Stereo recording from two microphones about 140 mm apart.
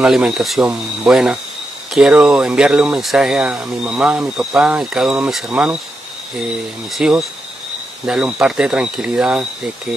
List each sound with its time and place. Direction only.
0.0 s speech: 5° right (ahead or behind)
7.0 s speech: 5° right (ahead or behind)